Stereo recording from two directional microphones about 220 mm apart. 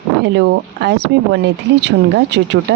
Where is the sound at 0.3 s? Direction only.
50° right (ahead or behind).